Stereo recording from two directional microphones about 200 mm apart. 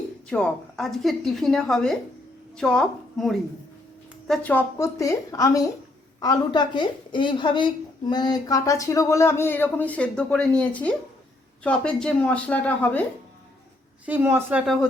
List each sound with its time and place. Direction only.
0.3 s a woman's voice: 5° left (ahead or behind)
14.0 s a woman's voice: 10° right (ahead or behind)
14.6 s a woman's voice: centre (ahead or behind)